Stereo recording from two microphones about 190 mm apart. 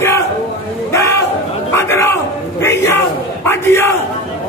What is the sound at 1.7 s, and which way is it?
Scratch, 15° left (ahead or behind).